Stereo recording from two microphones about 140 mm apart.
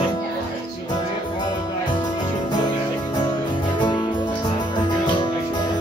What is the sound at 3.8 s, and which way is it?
Music, 35° left (ahead or behind).